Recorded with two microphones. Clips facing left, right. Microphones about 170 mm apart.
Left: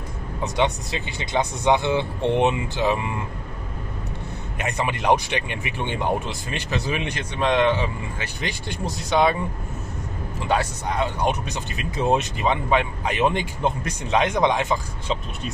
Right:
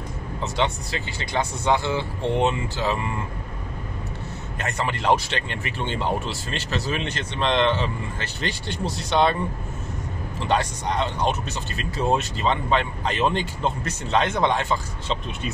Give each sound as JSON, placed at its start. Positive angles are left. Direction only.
{"t": 0.4, "sound": "speech", "side_deg": 15}
{"t": 4.6, "sound": "speech", "side_deg": 15}
{"t": 10.4, "sound": "speech", "side_deg": 5}